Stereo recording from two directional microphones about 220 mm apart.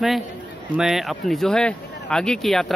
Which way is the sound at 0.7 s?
Centre (ahead or behind).